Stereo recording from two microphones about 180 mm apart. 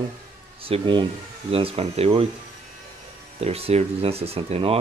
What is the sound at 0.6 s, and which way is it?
Speech, 30° right (ahead or behind).